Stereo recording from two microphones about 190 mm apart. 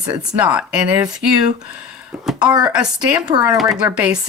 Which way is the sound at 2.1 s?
5° right (ahead or behind).